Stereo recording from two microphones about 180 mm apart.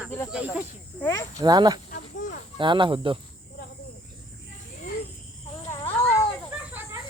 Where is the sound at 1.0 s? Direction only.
15° left (ahead or behind).